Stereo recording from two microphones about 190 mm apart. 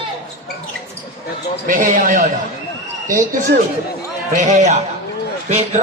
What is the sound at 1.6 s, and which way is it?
A man's voice, 45° right (ahead or behind).